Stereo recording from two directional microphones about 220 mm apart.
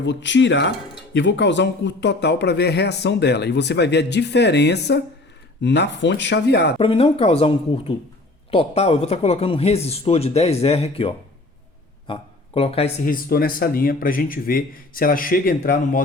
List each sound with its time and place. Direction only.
0.0 s speech: 55° left (ahead or behind)
6.7 s speech: 25° left (ahead or behind)
13.1 s speech: 40° left (ahead or behind)